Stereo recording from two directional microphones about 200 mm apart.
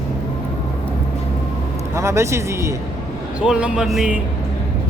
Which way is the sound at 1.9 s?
15° right (ahead or behind).